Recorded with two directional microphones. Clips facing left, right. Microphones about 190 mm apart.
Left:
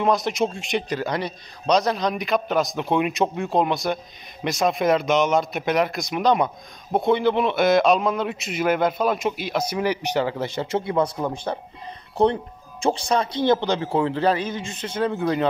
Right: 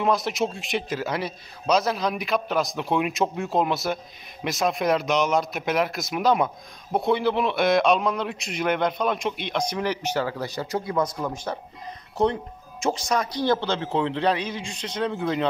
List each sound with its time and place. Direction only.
0.0 s a man's voice: centre (ahead or behind)